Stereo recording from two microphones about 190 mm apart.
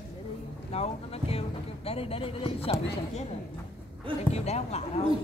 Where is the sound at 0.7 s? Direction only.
30° left (ahead or behind).